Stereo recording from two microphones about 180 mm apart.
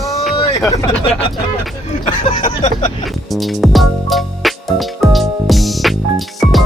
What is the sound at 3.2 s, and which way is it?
Music, centre (ahead or behind).